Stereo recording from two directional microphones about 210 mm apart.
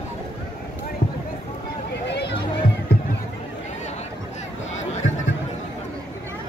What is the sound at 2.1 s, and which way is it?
Run, 55° left (ahead or behind).